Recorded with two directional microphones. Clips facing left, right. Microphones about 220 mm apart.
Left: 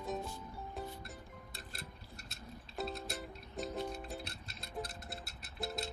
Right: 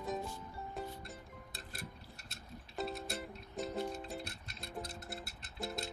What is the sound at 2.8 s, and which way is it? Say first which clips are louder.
Music: right 1 dB; centre (ahead or behind).